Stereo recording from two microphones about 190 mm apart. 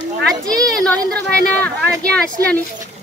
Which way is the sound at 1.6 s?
5° left (ahead or behind).